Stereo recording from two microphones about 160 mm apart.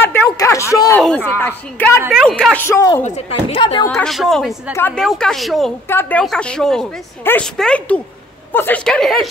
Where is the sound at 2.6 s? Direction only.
20° left (ahead or behind).